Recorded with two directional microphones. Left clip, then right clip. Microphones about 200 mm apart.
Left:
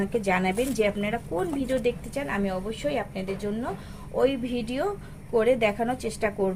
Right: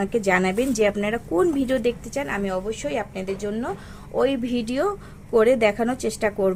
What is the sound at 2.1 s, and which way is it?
A woman's voice, 35° right (ahead or behind).